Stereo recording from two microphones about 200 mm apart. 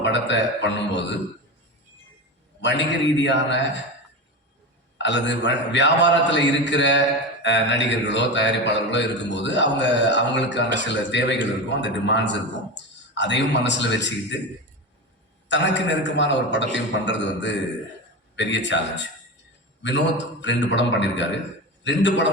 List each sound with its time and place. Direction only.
0.0 s a man's voice: 65° left (ahead or behind)
2.6 s a man's voice: 60° left (ahead or behind)
5.0 s a man's voice: 65° left (ahead or behind)
15.4 s a man's voice: 65° left (ahead or behind)